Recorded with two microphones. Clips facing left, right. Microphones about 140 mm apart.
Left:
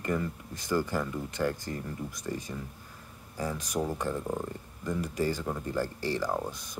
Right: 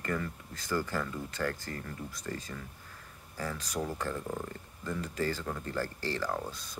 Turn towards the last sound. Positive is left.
turn(degrees=20)  # may be behind; listen again after turning